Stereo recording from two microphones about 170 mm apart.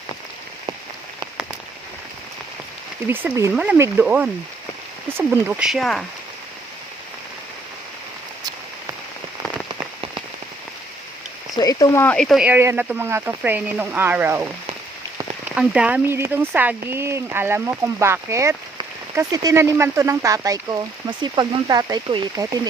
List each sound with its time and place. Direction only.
3.1 s speech: 15° right (ahead or behind); by 6.1 s 5° left (ahead or behind)
11.5 s speech: 20° left (ahead or behind); by 14.5 s 10° right (ahead or behind)
15.5 s speech: 5° right (ahead or behind); by 22.7 s 20° right (ahead or behind)